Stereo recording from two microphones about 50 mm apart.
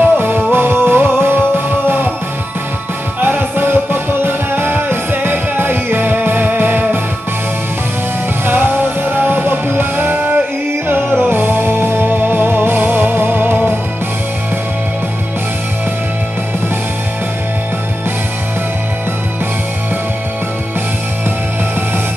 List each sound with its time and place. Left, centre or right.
0.0 s music: right
3.2 s music: right
8.5 s music: right
10.1 s music: right